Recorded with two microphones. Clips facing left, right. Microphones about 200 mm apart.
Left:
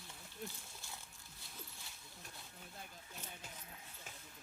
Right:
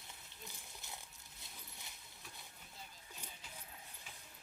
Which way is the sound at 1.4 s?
20° right (ahead or behind).